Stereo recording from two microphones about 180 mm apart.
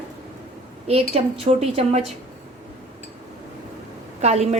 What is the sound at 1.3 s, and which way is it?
Speech, 30° right (ahead or behind).